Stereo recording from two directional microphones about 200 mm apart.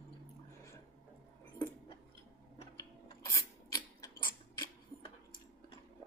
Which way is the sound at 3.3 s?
15° left (ahead or behind).